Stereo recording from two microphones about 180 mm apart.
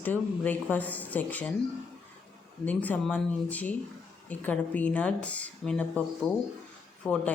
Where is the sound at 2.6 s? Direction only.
10° left (ahead or behind).